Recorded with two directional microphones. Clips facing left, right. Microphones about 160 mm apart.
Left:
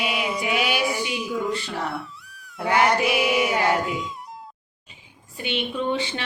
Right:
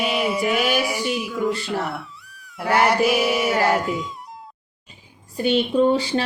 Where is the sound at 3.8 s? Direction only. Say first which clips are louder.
Right 2 dB; centre (ahead or behind).